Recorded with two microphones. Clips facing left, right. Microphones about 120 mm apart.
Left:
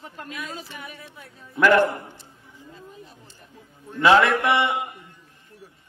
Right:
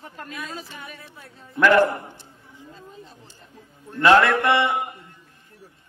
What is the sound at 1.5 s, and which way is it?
Speech, centre (ahead or behind).